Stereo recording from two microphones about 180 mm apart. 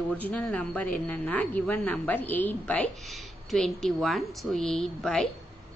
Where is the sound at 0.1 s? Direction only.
10° left (ahead or behind).